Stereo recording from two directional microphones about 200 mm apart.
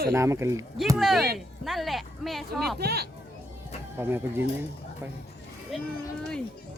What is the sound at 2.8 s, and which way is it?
Speech, 55° right (ahead or behind).